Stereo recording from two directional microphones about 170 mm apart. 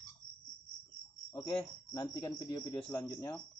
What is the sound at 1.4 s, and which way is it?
Speech, 20° left (ahead or behind).